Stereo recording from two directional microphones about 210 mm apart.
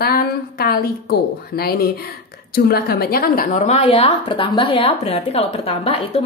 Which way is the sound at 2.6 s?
50° left (ahead or behind).